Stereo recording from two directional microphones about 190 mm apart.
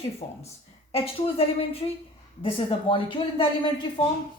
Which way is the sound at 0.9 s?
30° left (ahead or behind).